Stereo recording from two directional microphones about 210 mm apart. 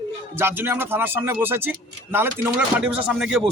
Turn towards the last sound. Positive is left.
turn(degrees=-5)  # may be behind; listen again after turning